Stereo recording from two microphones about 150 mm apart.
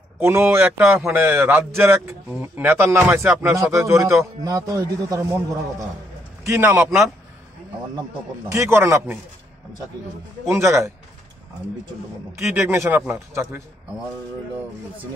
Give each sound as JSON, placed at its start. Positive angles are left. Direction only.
{"t": 0.2, "sound": "a man's voice", "side_deg": -15}
{"t": 8.5, "sound": "a man's voice", "side_deg": -20}
{"t": 10.5, "sound": "speech", "side_deg": -20}
{"t": 12.5, "sound": "a man's voice", "side_deg": -20}